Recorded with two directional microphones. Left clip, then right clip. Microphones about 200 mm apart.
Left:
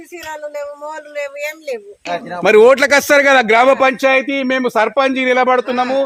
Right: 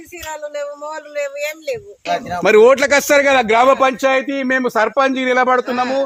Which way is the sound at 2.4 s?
10° left (ahead or behind).